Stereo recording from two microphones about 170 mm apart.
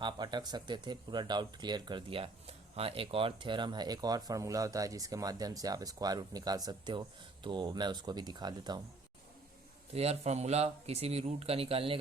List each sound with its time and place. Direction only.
0.0 s speech: 25° right (ahead or behind)
9.9 s speech: 35° right (ahead or behind)